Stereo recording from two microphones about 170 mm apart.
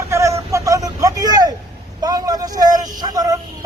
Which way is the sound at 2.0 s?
20° right (ahead or behind).